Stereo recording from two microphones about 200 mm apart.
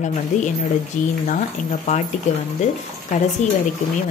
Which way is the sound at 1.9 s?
35° left (ahead or behind).